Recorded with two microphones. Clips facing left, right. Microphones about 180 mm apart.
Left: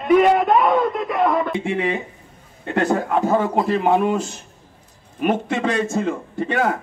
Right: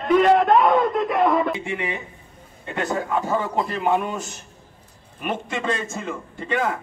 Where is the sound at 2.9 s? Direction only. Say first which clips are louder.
Left 4 dB; 55° left (ahead or behind).